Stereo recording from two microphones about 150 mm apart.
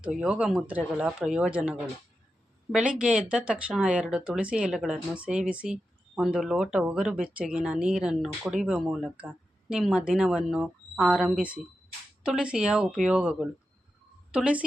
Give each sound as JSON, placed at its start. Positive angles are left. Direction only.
{"t": 0.0, "sound": "speech", "side_deg": -5}